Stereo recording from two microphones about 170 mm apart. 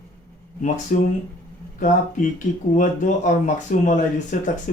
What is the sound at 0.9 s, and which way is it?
Speech, 55° left (ahead or behind).